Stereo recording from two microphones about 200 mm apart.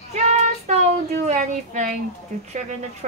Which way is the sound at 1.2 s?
40° right (ahead or behind).